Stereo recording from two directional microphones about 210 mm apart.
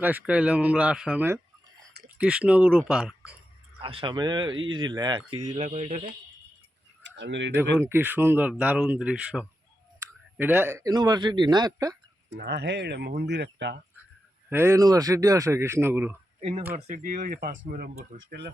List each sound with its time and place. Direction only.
0.0 s speech: 5° right (ahead or behind)
3.8 s speech: 25° right (ahead or behind)
5.5 s speech: 30° right (ahead or behind)
7.0 s a sound: 55° right (ahead or behind)
7.5 s speech: 10° right (ahead or behind)
12.4 s speech: 55° right (ahead or behind)
14.5 s speech: 10° right (ahead or behind)
16.4 s speech: 30° right (ahead or behind); by 18.5 s 50° right (ahead or behind)